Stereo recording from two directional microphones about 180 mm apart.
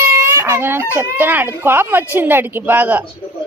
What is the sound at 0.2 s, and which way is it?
Speech, 15° right (ahead or behind).